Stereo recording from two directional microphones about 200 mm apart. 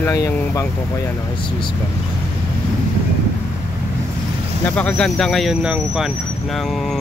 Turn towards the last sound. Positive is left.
turn(degrees=-5)  # may be behind; listen again after turning